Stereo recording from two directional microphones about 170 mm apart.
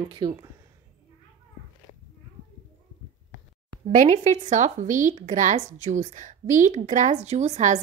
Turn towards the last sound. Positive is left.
turn(degrees=-45)  # may be behind; listen again after turning